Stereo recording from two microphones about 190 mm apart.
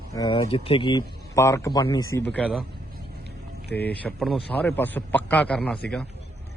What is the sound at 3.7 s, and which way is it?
A man's voice, 10° left (ahead or behind).